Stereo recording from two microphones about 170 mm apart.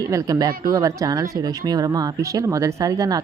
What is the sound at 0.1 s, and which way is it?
Speech, 20° right (ahead or behind).